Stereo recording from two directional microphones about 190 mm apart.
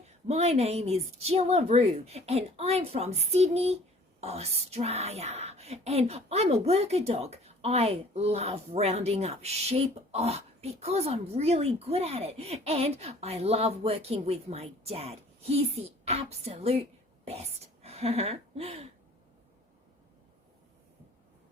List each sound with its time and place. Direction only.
0.3 s speech: 35° right (ahead or behind)